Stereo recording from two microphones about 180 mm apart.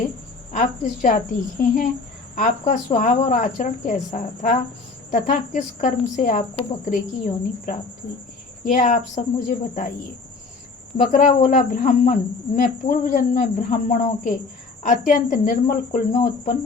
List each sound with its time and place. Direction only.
0.5 s speech: 45° left (ahead or behind)
10.9 s speech: 45° left (ahead or behind)